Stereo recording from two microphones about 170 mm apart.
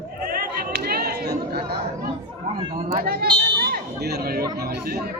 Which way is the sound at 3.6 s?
65° right (ahead or behind).